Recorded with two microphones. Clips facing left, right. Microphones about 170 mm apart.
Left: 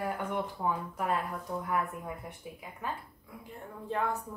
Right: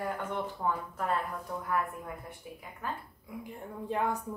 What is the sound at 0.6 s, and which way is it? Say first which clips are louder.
Speech: even; 10° left (ahead or behind).